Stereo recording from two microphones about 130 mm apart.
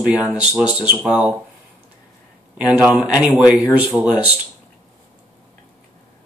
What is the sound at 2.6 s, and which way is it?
Speech, 5° right (ahead or behind).